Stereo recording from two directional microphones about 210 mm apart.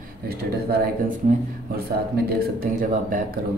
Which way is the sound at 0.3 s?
50° right (ahead or behind).